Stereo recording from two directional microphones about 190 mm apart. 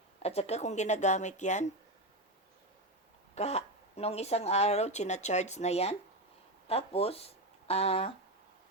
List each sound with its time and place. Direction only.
0.2 s speech: 35° left (ahead or behind)
3.3 s speech: 35° left (ahead or behind)